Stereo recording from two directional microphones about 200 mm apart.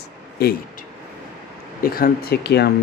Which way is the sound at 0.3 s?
50° left (ahead or behind).